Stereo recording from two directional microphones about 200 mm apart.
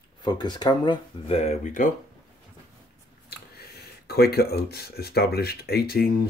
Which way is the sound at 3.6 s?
50° left (ahead or behind).